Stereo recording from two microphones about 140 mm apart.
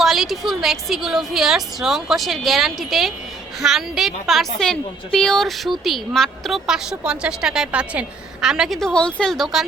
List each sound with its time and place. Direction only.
0.0 s a woman's voice: centre (ahead or behind)